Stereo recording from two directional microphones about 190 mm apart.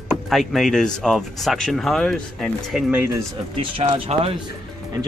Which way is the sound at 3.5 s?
30° right (ahead or behind).